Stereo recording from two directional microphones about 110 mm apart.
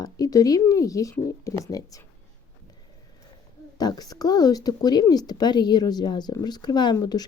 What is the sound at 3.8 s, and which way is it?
Speech, 35° left (ahead or behind).